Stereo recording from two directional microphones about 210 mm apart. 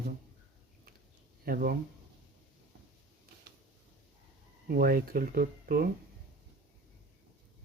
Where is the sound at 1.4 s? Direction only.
45° right (ahead or behind).